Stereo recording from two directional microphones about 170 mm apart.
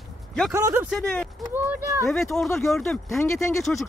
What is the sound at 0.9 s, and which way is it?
Speech, 5° left (ahead or behind).